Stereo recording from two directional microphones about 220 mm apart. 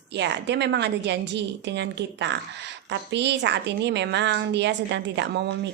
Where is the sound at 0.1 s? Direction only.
50° right (ahead or behind).